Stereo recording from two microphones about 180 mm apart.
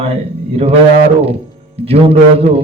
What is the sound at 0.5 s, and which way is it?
Speech, 35° right (ahead or behind).